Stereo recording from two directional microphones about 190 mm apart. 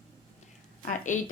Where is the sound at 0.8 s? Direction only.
45° left (ahead or behind).